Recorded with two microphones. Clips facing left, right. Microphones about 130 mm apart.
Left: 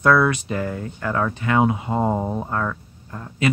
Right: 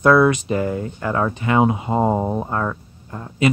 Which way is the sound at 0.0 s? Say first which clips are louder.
Right 3 dB; 20° right (ahead or behind).